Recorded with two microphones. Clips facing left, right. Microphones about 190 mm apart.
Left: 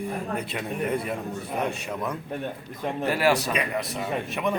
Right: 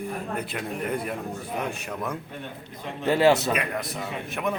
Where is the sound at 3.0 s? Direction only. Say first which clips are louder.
Right 4 dB; 25° right (ahead or behind).